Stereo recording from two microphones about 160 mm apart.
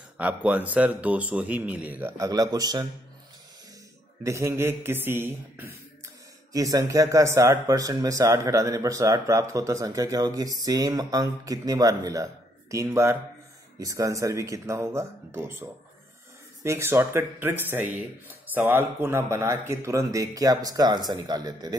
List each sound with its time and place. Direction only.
0.2 s speech: 10° right (ahead or behind)
4.2 s a man's voice: 15° right (ahead or behind)